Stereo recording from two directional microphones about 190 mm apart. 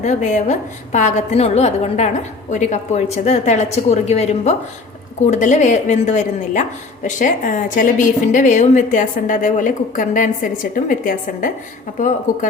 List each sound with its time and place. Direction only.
0.0 s a woman's voice: 40° left (ahead or behind)